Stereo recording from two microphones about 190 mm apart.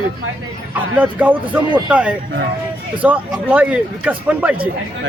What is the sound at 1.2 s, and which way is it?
Speech, 10° right (ahead or behind).